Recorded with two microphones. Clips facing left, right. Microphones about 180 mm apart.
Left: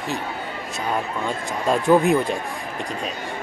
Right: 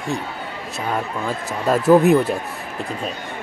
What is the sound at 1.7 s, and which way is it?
Speech, 5° right (ahead or behind).